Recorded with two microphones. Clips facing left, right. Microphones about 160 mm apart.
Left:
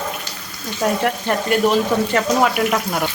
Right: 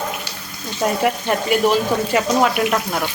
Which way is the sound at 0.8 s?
5° right (ahead or behind).